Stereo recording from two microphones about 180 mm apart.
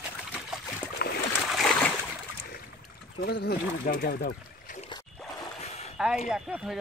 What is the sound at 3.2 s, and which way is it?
Speech, 55° left (ahead or behind).